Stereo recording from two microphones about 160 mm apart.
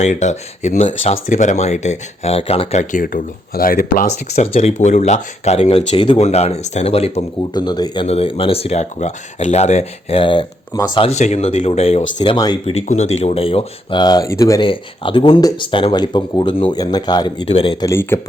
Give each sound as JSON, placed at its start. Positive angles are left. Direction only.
{"t": 0.0, "sound": "speech", "side_deg": 45}
{"t": 2.9, "sound": "speech", "side_deg": 65}
{"t": 4.4, "sound": "speech", "side_deg": 40}
{"t": 7.5, "sound": "speech", "side_deg": 25}
{"t": 8.0, "sound": "speech", "side_deg": 40}
{"t": 11.1, "sound": "speech", "side_deg": 45}
{"t": 12.6, "sound": "speech", "side_deg": 40}
{"t": 14.6, "sound": "speech", "side_deg": 30}
{"t": 17.8, "sound": "speech", "side_deg": 15}